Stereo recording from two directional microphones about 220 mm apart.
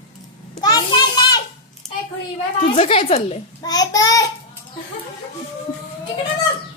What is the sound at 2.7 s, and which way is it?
Child singing, 25° left (ahead or behind).